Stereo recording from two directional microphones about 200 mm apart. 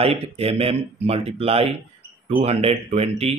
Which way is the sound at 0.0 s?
30° right (ahead or behind).